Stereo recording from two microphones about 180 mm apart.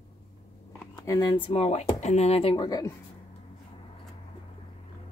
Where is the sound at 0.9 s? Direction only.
20° left (ahead or behind); by 2.5 s 35° left (ahead or behind).